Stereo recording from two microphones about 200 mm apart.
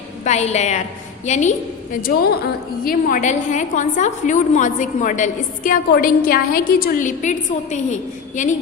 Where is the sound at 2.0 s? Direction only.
50° left (ahead or behind).